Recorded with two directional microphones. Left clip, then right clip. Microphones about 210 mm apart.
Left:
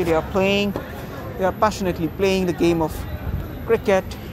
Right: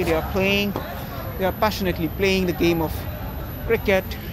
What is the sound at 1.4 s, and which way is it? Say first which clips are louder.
Speech: left 2 dB; 10° left (ahead or behind).